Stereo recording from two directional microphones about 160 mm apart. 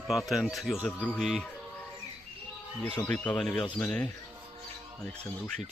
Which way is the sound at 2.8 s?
10° left (ahead or behind).